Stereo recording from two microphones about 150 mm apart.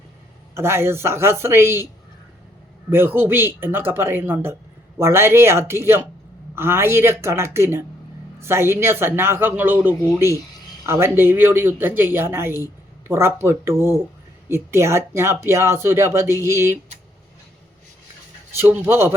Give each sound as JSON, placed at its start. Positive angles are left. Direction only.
{"t": 0.5, "sound": "speech", "side_deg": -15}
{"t": 2.9, "sound": "speech", "side_deg": -15}
{"t": 18.5, "sound": "speech", "side_deg": -15}